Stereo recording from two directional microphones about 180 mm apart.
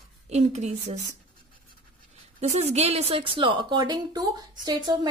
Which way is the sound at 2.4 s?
35° right (ahead or behind).